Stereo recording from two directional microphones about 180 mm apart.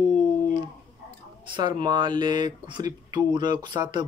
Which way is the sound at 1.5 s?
25° right (ahead or behind).